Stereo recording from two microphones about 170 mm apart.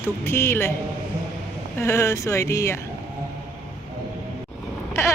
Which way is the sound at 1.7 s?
15° left (ahead or behind).